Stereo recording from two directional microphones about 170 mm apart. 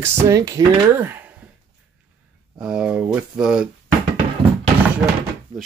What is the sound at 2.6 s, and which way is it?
Speech, 5° right (ahead or behind).